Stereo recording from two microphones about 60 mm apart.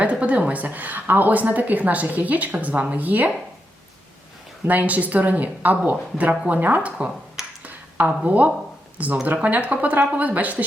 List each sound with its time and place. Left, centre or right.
0.0 s a woman's voice: right
4.6 s a woman's voice: right
7.6 s a sound: right
9.2 s a woman's voice: right